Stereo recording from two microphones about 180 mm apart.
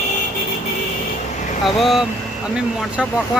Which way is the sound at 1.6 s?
Centre (ahead or behind).